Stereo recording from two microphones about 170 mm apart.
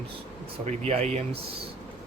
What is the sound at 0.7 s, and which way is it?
Speech, 40° right (ahead or behind).